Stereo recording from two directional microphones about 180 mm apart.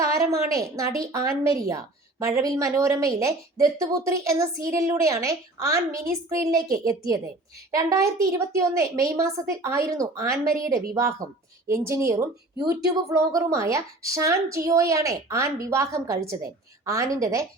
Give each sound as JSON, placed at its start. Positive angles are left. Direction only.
{"t": 0.2, "sound": "a woman's voice", "side_deg": -15}